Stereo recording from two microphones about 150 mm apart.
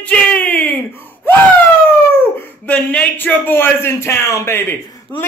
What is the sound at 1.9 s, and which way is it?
A man's voice, 15° left (ahead or behind).